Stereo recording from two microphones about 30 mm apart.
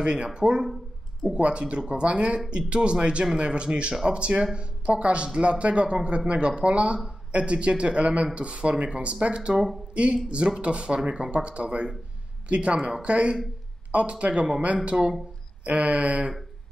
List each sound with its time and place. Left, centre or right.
0.0 s speech: right
0.3 s speech: right
1.3 s speech: right
12.4 s a sound: right
13.0 s speech: right
15.7 s a sound: right